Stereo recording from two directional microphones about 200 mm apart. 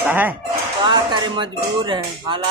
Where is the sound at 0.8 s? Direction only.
25° right (ahead or behind).